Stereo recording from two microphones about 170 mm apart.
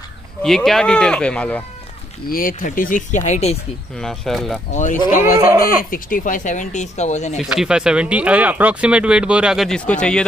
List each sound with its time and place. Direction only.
0.4 s speech: 5° left (ahead or behind)
2.2 s speech: 55° left (ahead or behind)
4.0 s speech: 5° left (ahead or behind)
5.1 s speech: 50° left (ahead or behind)
7.4 s speech: 5° right (ahead or behind)